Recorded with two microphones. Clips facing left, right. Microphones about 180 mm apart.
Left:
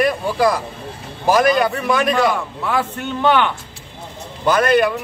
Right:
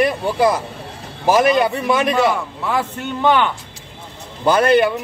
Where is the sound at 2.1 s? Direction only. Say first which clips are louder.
Right 1 dB; 5° right (ahead or behind).